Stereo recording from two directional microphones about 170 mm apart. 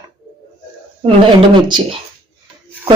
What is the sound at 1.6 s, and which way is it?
Speech, 25° right (ahead or behind).